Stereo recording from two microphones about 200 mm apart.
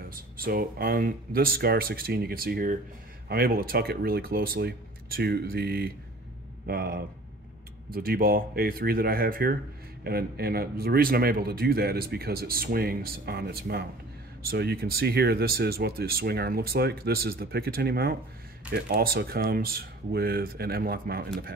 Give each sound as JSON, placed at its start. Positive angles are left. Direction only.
{"t": 0.1, "sound": "a man's voice", "side_deg": -45}